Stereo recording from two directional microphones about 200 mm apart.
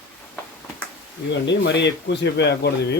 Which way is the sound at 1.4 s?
60° left (ahead or behind).